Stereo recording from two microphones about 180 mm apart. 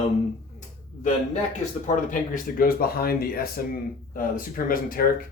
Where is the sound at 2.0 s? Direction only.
50° left (ahead or behind).